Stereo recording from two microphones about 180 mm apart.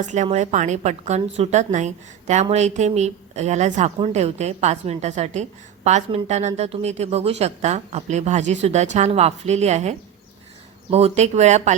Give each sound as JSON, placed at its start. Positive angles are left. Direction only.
{"t": 0.0, "sound": "a woman's voice", "side_deg": -40}
{"t": 10.9, "sound": "a woman's voice", "side_deg": -35}